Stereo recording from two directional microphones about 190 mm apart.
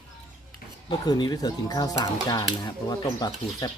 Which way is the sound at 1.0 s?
20° left (ahead or behind).